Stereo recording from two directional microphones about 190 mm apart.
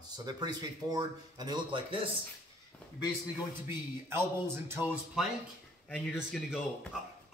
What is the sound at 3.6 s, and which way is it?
Speech, 15° right (ahead or behind).